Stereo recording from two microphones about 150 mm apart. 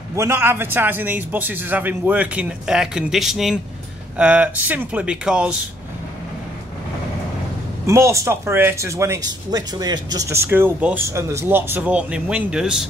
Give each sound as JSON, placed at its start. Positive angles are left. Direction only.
{"t": 0.1, "sound": "speech", "side_deg": -20}
{"t": 7.8, "sound": "speech", "side_deg": -20}